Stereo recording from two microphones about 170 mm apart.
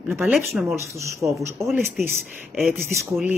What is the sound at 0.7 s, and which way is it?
Speech, 15° right (ahead or behind).